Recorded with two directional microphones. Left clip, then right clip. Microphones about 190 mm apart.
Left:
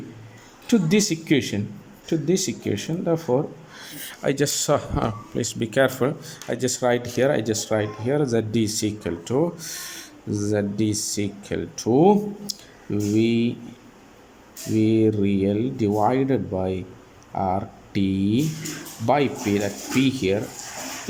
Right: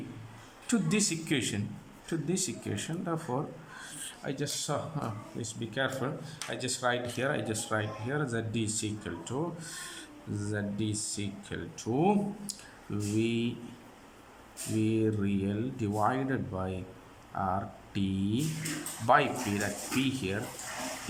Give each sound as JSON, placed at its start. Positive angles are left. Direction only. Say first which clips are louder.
{"t": 0.7, "sound": "speech", "louder": "left 10 dB", "side_deg": 20}
{"t": 4.1, "sound": "speech", "louder": "left 14 dB", "side_deg": 40}
{"t": 14.8, "sound": "speech", "louder": "left 10 dB", "side_deg": 20}